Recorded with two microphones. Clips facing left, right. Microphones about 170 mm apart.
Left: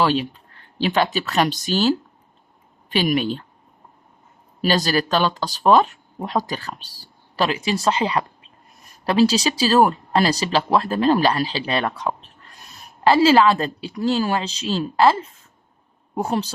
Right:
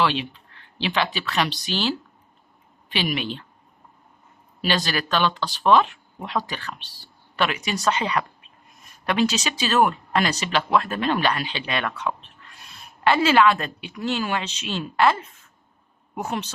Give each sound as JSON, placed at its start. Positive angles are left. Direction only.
{"t": 0.0, "sound": "speech", "side_deg": 40}
{"t": 4.6, "sound": "speech", "side_deg": 40}